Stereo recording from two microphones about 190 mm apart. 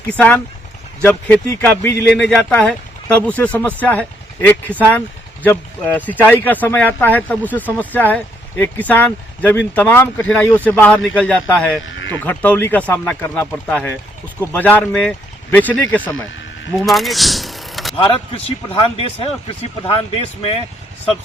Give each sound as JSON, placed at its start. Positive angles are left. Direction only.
{"t": 0.1, "sound": "speech", "side_deg": 10}
{"t": 16.7, "sound": "vehicle", "side_deg": 0}
{"t": 17.9, "sound": "speech", "side_deg": 30}